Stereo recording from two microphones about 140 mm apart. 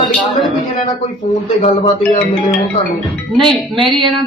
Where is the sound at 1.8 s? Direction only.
45° left (ahead or behind).